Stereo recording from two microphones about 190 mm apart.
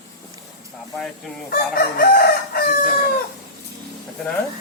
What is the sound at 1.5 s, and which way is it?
Chicken, 50° left (ahead or behind).